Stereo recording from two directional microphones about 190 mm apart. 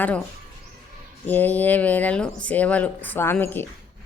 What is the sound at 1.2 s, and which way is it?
Speech, 10° left (ahead or behind).